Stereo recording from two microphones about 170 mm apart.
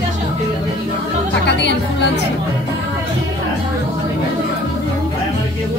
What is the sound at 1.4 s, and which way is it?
Music, 90° left.